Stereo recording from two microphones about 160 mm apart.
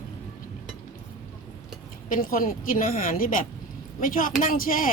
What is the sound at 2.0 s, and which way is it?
Speech, 60° left (ahead or behind).